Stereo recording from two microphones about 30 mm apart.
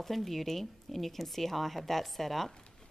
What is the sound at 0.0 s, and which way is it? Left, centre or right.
A woman's voice, centre.